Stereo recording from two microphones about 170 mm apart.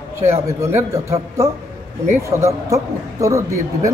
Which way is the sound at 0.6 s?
15° right (ahead or behind).